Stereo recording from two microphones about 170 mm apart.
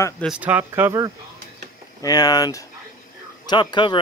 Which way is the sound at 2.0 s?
25° left (ahead or behind).